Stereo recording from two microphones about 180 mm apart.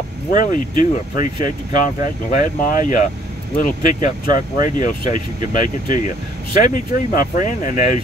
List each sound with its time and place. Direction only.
0.3 s speech: 45° left (ahead or behind)